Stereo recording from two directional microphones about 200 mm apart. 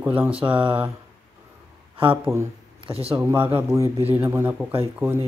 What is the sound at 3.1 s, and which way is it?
Speech, 10° right (ahead or behind).